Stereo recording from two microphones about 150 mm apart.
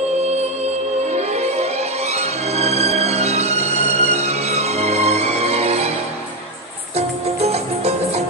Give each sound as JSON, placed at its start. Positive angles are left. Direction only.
{"t": 1.1, "sound": "music", "side_deg": -45}
{"t": 7.0, "sound": "music", "side_deg": -45}